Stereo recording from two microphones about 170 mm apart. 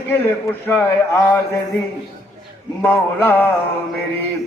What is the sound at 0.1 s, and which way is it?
Mantra, 10° left (ahead or behind).